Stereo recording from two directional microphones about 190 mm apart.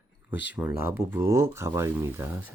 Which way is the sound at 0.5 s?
10° right (ahead or behind).